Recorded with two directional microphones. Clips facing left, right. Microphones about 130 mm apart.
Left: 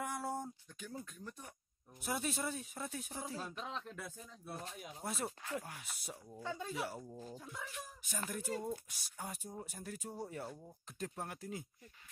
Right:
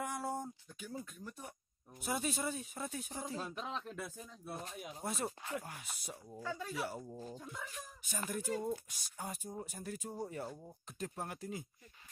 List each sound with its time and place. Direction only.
0.0 s speech: centre (ahead or behind)
3.4 s speech: 15° right (ahead or behind)
6.4 s speech: 20° left (ahead or behind)
7.2 s speech: centre (ahead or behind)